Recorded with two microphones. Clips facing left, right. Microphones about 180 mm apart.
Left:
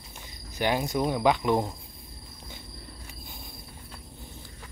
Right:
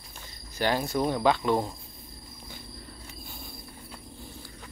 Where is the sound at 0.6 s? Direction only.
15° left (ahead or behind).